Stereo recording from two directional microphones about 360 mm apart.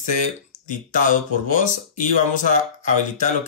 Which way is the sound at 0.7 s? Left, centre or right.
Left.